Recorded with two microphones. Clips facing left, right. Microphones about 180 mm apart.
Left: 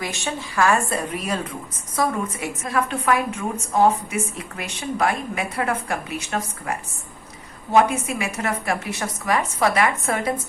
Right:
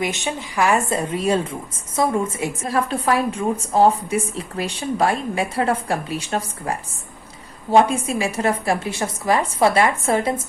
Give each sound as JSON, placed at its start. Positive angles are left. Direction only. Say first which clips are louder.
{"t": 0.0, "sound": "a woman's voice", "louder": "right 4 dB", "side_deg": -20}